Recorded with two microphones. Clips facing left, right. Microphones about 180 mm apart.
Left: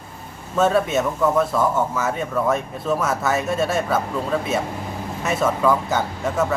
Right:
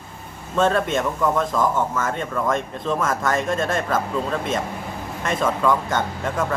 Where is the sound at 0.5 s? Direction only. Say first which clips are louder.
Left 1 dB; 5° left (ahead or behind).